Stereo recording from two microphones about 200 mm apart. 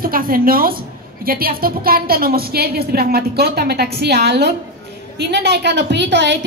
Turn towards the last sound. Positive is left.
turn(degrees=-60)  # may be behind; listen again after turning